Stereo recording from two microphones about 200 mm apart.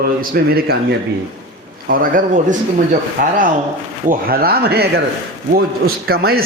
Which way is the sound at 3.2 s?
45° right (ahead or behind).